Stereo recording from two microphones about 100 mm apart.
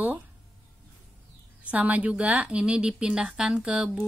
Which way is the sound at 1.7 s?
15° right (ahead or behind).